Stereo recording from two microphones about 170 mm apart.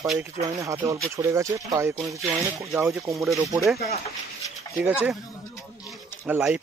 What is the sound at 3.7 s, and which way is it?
Speech, 65° left (ahead or behind).